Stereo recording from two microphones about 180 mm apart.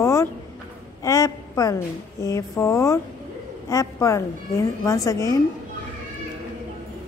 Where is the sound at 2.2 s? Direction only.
20° left (ahead or behind).